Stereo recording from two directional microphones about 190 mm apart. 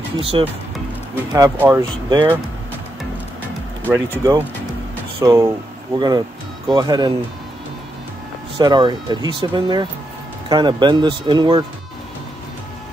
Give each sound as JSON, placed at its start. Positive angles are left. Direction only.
{"t": 0.2, "sound": "speech", "side_deg": -30}
{"t": 1.3, "sound": "speech", "side_deg": -20}
{"t": 3.9, "sound": "speech", "side_deg": -15}
{"t": 8.5, "sound": "speech", "side_deg": -25}